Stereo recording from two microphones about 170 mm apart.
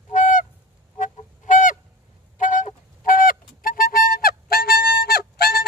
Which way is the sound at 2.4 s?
50° left (ahead or behind).